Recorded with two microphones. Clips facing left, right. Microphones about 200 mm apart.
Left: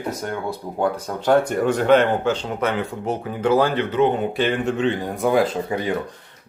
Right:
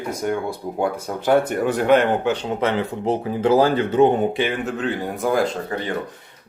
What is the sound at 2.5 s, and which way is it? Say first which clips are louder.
Speech: right 2 dB; 30° right (ahead or behind).